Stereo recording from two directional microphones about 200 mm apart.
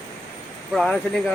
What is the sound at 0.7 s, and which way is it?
Speech, centre (ahead or behind).